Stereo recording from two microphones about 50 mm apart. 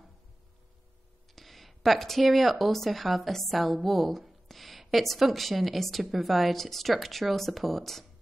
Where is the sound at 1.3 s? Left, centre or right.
Centre.